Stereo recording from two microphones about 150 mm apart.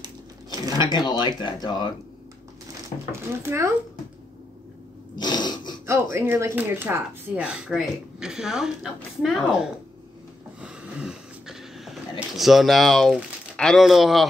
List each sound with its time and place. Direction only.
0.0 s dishes: 25° right (ahead or behind)
0.7 s speech: 30° left (ahead or behind)
3.1 s speech: 20° right (ahead or behind)
5.1 s a sound: 30° left (ahead or behind)
6.1 s speech: 15° right (ahead or behind); by 9.7 s centre (ahead or behind)
10.6 s a sound: 5° right (ahead or behind)
12.4 s speech: centre (ahead or behind)